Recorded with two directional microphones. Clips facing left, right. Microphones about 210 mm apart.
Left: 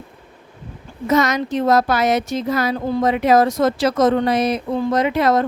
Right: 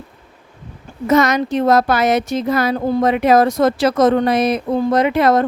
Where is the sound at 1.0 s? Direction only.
55° right (ahead or behind).